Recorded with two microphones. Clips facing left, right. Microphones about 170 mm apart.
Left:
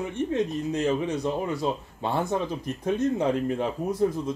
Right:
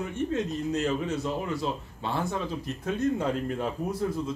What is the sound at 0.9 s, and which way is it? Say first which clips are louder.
Speech: left 3 dB; 20° left (ahead or behind).